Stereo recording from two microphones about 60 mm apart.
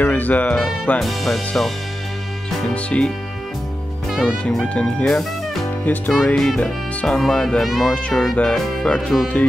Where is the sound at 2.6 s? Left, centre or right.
Centre.